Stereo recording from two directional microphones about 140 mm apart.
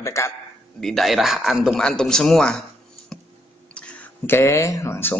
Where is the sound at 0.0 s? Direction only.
20° left (ahead or behind).